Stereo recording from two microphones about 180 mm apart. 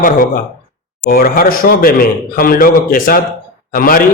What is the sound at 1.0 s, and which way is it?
A man's voice, 55° left (ahead or behind).